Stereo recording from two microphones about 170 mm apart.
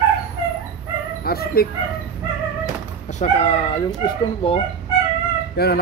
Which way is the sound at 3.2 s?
40° left (ahead or behind).